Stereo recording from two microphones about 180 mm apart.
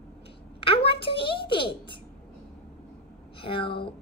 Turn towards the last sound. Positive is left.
turn(degrees=30)  # may be behind; listen again after turning